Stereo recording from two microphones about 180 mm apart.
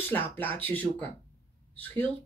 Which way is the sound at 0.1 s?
10° left (ahead or behind).